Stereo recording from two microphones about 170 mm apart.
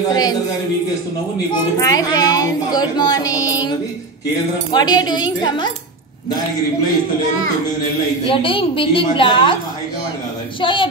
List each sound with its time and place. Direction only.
0.1 s speech: 25° left (ahead or behind)
1.8 s speech: 20° left (ahead or behind)
4.7 s speech: 25° left (ahead or behind)
8.3 s a woman's voice: 30° left (ahead or behind)
10.6 s speech: 30° left (ahead or behind)